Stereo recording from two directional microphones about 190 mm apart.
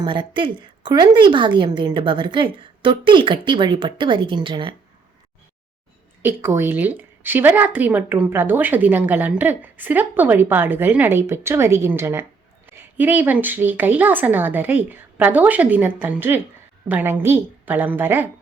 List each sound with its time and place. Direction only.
0.0 s a woman's voice: 25° right (ahead or behind)
6.2 s a woman's voice: 10° right (ahead or behind)